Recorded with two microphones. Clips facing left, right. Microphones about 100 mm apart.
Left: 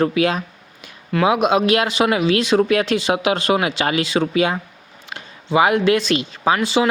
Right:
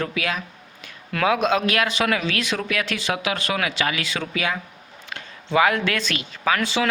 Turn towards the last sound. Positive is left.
turn(degrees=15)  # may be behind; listen again after turning